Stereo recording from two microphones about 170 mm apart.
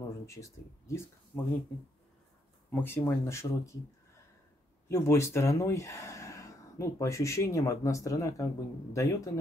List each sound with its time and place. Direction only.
0.3 s speech: 15° left (ahead or behind)
2.7 s speech: 15° left (ahead or behind)
4.8 s speech: 15° left (ahead or behind)